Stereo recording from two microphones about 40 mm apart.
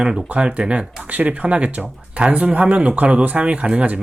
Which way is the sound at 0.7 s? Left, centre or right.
Right.